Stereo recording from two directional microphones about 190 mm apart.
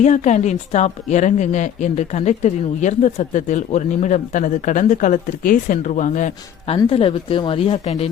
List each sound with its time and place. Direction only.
0.0 s a woman's voice: 40° left (ahead or behind)
6.7 s a woman's voice: 30° left (ahead or behind)